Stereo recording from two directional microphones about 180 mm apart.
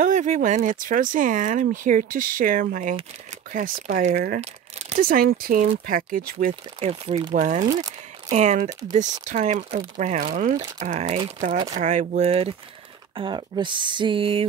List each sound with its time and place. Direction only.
0.0 s speech: 45° right (ahead or behind)
4.4 s crumpling: 35° right (ahead or behind)
5.0 s speech: 55° right (ahead or behind)
6.8 s speech: 35° right (ahead or behind)